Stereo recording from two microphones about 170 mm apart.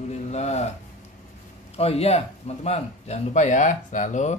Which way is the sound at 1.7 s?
35° left (ahead or behind).